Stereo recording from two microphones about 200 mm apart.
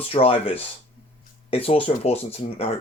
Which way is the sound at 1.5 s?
30° left (ahead or behind).